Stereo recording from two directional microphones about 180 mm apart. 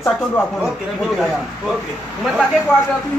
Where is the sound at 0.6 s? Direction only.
Centre (ahead or behind).